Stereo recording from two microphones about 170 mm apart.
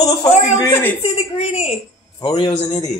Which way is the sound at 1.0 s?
35° left (ahead or behind).